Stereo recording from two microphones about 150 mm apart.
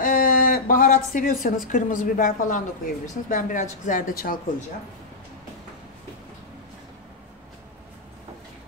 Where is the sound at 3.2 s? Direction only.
60° left (ahead or behind).